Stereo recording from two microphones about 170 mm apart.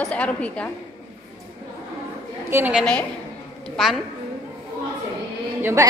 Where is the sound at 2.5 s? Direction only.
10° right (ahead or behind).